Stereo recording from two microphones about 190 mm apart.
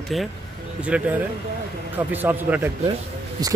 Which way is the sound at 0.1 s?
Centre (ahead or behind).